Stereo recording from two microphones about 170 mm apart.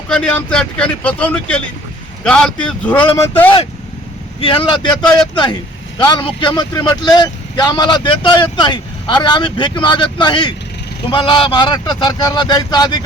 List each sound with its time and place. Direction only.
0.1 s speech: 5° left (ahead or behind)
4.4 s speech: 30° left (ahead or behind)